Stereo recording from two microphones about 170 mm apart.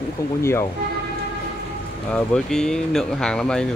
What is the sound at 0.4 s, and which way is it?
Speech, 15° left (ahead or behind).